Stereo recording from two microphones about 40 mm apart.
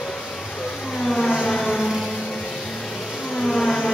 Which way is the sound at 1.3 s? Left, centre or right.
Centre.